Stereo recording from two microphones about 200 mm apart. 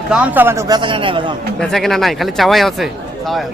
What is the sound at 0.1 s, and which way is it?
A man's voice, 5° right (ahead or behind).